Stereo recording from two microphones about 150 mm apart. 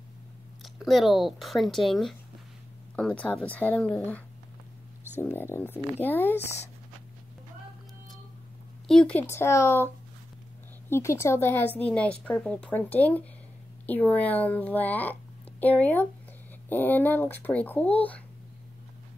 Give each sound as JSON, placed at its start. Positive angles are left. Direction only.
{"t": 0.6, "sound": "a woman's voice", "side_deg": 0}
{"t": 5.2, "sound": "a woman's voice", "side_deg": 15}
{"t": 8.8, "sound": "speech", "side_deg": 5}
{"t": 9.3, "sound": "a woman's voice", "side_deg": 15}
{"t": 10.9, "sound": "a woman's voice", "side_deg": 20}